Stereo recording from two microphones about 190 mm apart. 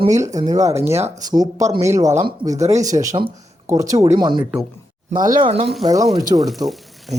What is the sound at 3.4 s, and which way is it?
Speech, 15° right (ahead or behind).